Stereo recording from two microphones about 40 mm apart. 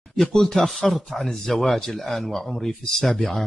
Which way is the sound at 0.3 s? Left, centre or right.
Centre.